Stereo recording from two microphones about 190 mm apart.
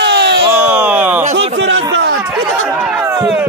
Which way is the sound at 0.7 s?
5° right (ahead or behind).